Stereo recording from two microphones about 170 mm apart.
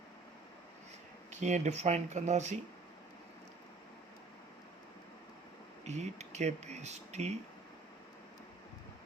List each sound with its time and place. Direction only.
1.3 s speech: 45° right (ahead or behind)
5.8 s speech: 40° right (ahead or behind)